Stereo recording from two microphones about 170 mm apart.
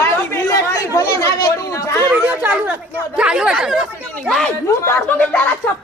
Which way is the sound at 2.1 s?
10° right (ahead or behind).